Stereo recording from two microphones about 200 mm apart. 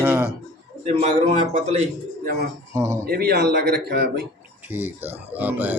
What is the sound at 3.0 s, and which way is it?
Speech, 50° right (ahead or behind).